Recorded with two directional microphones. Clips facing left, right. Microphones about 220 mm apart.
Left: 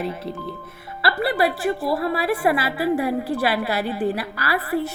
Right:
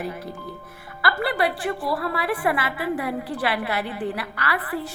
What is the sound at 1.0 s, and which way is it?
A woman's voice, 25° left (ahead or behind).